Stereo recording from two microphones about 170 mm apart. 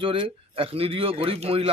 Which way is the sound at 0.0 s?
30° right (ahead or behind).